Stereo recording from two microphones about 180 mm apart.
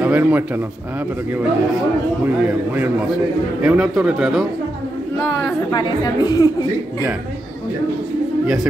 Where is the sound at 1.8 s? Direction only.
10° right (ahead or behind).